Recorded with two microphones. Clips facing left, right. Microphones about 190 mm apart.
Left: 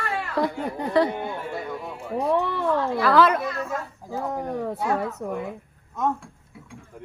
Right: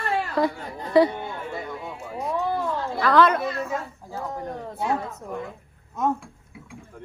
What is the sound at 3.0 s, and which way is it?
Speech, centre (ahead or behind).